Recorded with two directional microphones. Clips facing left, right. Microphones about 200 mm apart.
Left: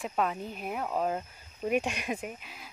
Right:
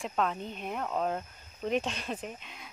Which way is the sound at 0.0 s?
5° left (ahead or behind).